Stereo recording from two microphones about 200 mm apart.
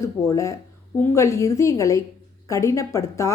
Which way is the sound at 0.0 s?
15° left (ahead or behind).